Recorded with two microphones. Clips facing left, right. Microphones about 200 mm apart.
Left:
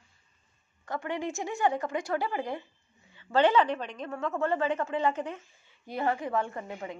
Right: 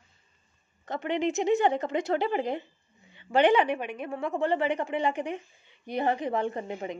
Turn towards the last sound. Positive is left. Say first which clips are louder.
# right 4 dB
turn(degrees=-20)  # may be behind; listen again after turning